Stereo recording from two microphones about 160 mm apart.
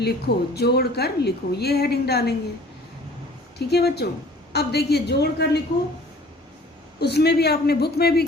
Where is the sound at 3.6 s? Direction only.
90° left.